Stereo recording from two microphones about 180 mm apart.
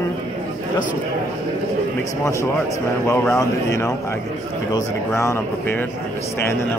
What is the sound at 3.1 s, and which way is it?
A man's voice, 15° left (ahead or behind).